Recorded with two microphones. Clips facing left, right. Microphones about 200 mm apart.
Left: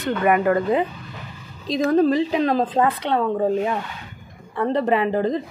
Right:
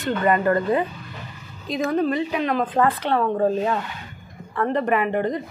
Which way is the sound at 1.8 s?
35° left (ahead or behind).